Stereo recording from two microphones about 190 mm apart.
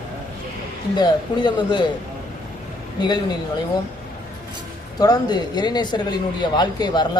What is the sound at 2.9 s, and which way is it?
Speech, 20° left (ahead or behind).